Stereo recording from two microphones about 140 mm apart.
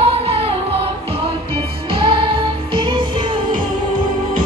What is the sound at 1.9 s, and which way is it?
Music, 40° right (ahead or behind).